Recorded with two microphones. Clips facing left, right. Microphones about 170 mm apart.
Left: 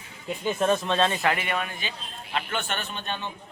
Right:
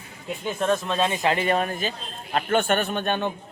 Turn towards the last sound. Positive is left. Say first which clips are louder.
# right 8 dB
turn(degrees=-55)  # may be behind; listen again after turning